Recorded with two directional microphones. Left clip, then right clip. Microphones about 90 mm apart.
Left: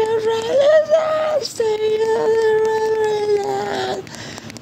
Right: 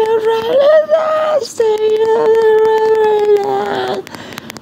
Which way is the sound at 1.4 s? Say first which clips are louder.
Right 6 dB; 30° right (ahead or behind).